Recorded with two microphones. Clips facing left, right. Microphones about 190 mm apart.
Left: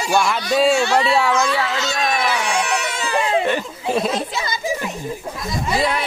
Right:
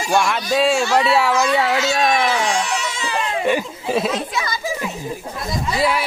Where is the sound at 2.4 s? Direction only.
60° left (ahead or behind).